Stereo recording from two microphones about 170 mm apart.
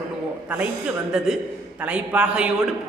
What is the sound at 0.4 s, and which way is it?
A man's voice, 10° right (ahead or behind).